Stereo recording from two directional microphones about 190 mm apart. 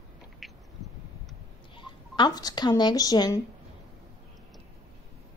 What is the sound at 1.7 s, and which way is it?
Speech, 20° left (ahead or behind).